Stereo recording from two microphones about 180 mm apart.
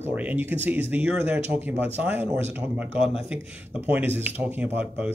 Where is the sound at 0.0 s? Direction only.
10° right (ahead or behind).